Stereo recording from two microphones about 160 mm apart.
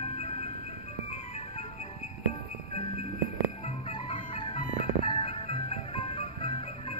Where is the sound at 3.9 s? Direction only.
35° left (ahead or behind).